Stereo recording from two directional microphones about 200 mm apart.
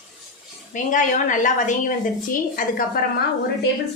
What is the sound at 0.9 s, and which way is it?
Speech, 40° left (ahead or behind).